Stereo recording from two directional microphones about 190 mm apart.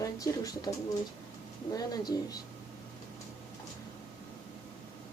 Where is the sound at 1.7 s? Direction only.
20° left (ahead or behind).